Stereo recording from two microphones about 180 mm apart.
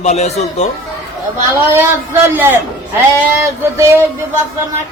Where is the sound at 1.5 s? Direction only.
10° right (ahead or behind).